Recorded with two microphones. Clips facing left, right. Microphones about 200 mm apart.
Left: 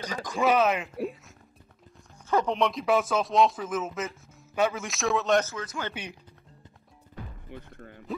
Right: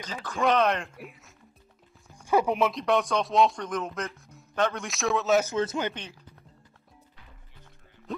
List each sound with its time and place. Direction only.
0.0 s speech: 15° left (ahead or behind)
2.2 s speech: 15° right (ahead or behind)
2.7 s speech: centre (ahead or behind)
5.6 s speech: 25° right (ahead or behind)
7.4 s music: 65° left (ahead or behind)